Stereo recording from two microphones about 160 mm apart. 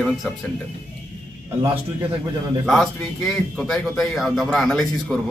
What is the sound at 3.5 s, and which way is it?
A man's voice, centre (ahead or behind).